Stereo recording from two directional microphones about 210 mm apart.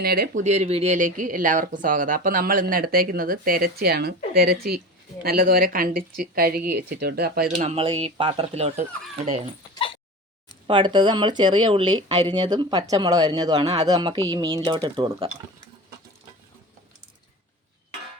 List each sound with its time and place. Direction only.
0.0 s a woman's voice: 45° right (ahead or behind)
7.6 s speech: 30° right (ahead or behind)
10.7 s speech: 20° right (ahead or behind)